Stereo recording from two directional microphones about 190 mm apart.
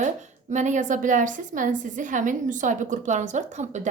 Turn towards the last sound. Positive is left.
turn(degrees=-40)  # may be behind; listen again after turning